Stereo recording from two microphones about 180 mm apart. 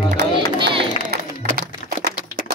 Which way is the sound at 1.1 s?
65° right (ahead or behind).